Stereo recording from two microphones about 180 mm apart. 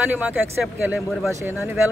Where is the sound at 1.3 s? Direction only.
15° right (ahead or behind).